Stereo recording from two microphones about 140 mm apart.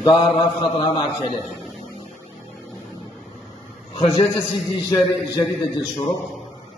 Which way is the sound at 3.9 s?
40° left (ahead or behind).